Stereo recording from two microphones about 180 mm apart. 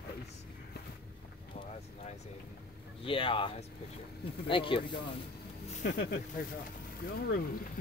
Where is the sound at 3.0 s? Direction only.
30° left (ahead or behind).